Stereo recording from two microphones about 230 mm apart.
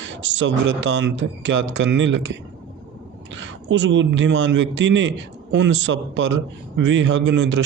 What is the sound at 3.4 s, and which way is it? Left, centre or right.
A man's voice, right.